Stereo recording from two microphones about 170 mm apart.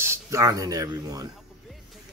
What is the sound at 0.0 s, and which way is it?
Speech, 15° right (ahead or behind).